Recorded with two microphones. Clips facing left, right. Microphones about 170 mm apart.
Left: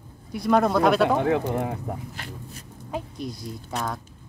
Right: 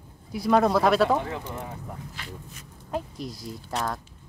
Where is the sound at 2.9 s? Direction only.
Centre (ahead or behind).